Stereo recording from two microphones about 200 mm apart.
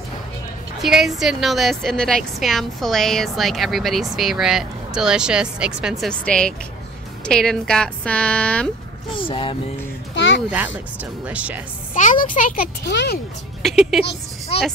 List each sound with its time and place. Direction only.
0.8 s a woman's voice: centre (ahead or behind)
9.2 s speech: 25° left (ahead or behind)
10.1 s a sound: 65° left (ahead or behind)
11.2 s speech: 5° right (ahead or behind)
11.9 s a child's voice: 40° left (ahead or behind); by 13.2 s 55° left (ahead or behind)
13.6 s a woman's voice: centre (ahead or behind)